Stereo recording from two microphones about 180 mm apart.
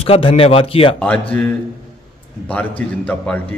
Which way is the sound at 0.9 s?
5° left (ahead or behind).